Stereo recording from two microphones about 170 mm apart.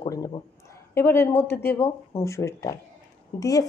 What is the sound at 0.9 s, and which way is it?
Speech, 15° left (ahead or behind).